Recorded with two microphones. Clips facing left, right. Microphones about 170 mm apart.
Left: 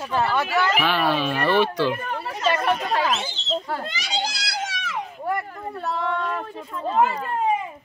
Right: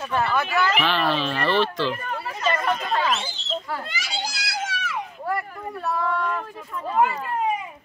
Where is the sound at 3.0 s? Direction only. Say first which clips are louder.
Left 1 dB; 20° left (ahead or behind).